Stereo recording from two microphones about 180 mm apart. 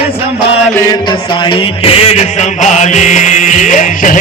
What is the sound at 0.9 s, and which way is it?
Music, 25° left (ahead or behind).